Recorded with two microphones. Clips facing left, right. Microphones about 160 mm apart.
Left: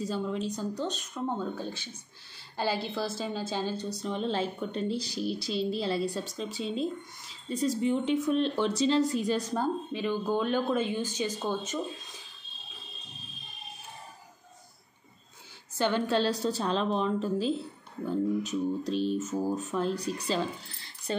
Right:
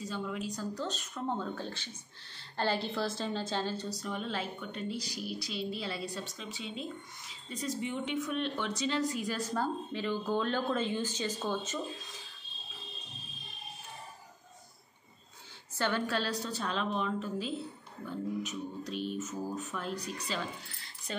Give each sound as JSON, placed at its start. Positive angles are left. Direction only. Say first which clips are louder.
{"t": 0.1, "sound": "a woman's voice", "louder": "left 5 dB", "side_deg": 30}
{"t": 4.1, "sound": "a woman's voice", "louder": "left 7 dB", "side_deg": 30}
{"t": 15.8, "sound": "speech", "louder": "left 6 dB", "side_deg": 25}
{"t": 21.1, "sound": "a sound", "louder": "left 7 dB", "side_deg": 35}